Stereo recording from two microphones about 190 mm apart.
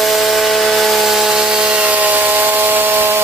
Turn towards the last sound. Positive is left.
turn(degrees=-10)  # may be behind; listen again after turning